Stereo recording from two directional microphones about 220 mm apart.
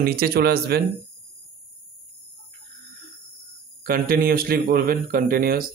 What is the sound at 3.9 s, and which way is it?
A man's voice, 40° right (ahead or behind).